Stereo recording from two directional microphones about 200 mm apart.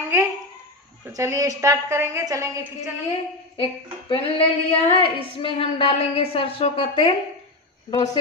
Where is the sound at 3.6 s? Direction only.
25° left (ahead or behind).